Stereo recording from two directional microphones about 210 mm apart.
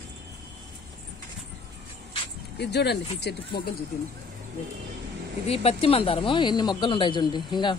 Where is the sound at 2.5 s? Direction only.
50° left (ahead or behind).